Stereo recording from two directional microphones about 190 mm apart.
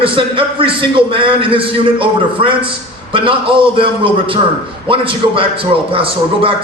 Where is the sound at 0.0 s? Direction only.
25° right (ahead or behind).